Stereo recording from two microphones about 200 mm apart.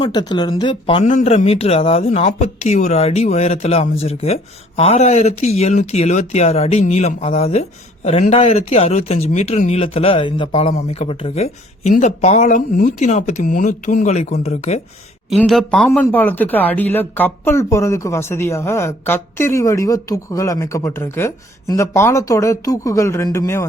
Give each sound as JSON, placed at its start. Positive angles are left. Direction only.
{"t": 0.0, "sound": "speech", "side_deg": 20}
{"t": 1.0, "sound": "speech", "side_deg": 35}
{"t": 15.3, "sound": "speech", "side_deg": 0}